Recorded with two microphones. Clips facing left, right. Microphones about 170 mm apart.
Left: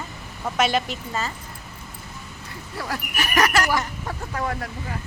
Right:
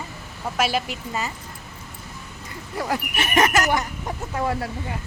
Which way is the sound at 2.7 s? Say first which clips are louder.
Right 4 dB; 20° right (ahead or behind).